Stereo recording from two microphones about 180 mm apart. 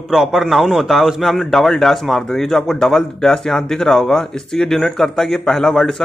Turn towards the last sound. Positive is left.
turn(degrees=5)  # may be behind; listen again after turning